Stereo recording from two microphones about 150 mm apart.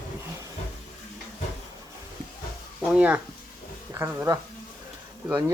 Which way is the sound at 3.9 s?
20° right (ahead or behind).